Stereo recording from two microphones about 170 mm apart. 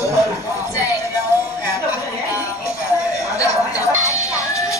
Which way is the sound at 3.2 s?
20° left (ahead or behind).